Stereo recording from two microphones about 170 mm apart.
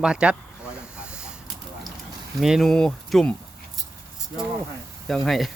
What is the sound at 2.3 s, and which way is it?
Speech, centre (ahead or behind).